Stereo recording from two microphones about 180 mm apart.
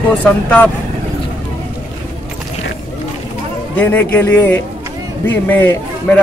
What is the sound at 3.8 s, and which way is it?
Speech, 10° left (ahead or behind).